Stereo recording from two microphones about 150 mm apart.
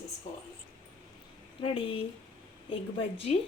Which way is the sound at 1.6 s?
35° left (ahead or behind).